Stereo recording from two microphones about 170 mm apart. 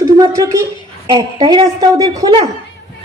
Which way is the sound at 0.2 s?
20° right (ahead or behind).